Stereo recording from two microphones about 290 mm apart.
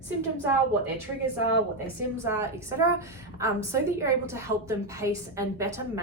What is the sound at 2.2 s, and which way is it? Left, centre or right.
A woman's voice, centre.